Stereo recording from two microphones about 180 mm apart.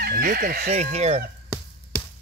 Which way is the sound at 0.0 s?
60° right (ahead or behind).